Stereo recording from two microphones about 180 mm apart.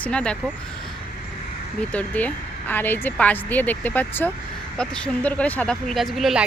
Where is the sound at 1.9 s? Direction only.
10° left (ahead or behind).